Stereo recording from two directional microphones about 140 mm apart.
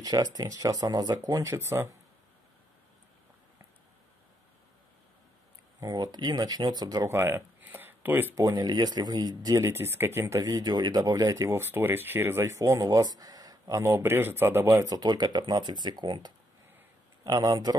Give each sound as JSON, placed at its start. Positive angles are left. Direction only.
{"t": 0.0, "sound": "speech", "side_deg": -25}
{"t": 5.8, "sound": "speech", "side_deg": -30}
{"t": 8.4, "sound": "speech", "side_deg": -25}